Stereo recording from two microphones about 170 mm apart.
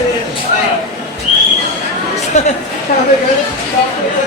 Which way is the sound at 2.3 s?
45° left (ahead or behind).